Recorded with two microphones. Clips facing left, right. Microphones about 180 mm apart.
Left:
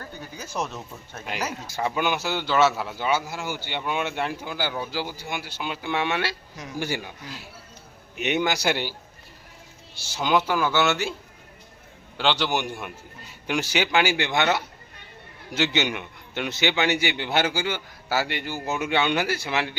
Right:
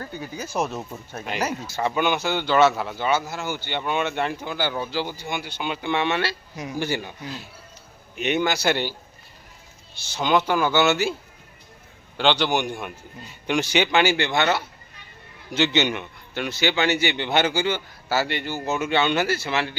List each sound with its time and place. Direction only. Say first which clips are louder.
0.3 s speech: right 4 dB; 10° right (ahead or behind)
1.6 s a man's voice: right 1 dB; 10° left (ahead or behind)
8.1 s a man's voice: right 1 dB; 15° left (ahead or behind); by 11.1 s centre (ahead or behind)
12.1 s a man's voice: right 3 dB; 5° left (ahead or behind)